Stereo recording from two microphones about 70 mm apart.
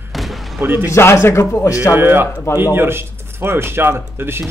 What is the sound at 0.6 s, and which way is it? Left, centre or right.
Speech, right.